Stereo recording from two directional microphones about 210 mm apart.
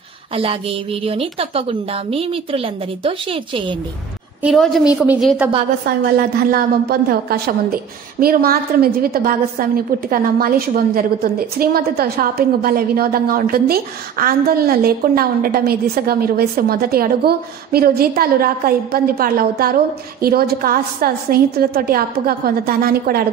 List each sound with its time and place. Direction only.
0.3 s a woman's voice: 25° right (ahead or behind)
4.4 s a woman's voice: centre (ahead or behind)
5.9 s a woman's voice: 50° right (ahead or behind)